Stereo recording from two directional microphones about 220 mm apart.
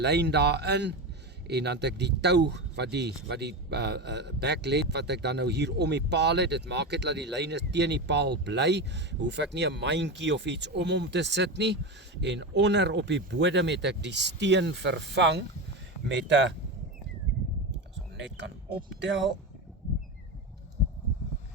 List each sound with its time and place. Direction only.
0.0 s speech: 50° right (ahead or behind)
18.2 s speech: 55° right (ahead or behind)